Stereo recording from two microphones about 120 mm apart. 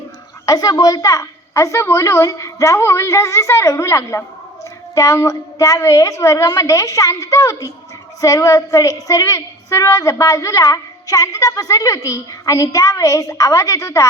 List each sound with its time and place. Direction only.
0.4 s a woman's voice: 30° left (ahead or behind)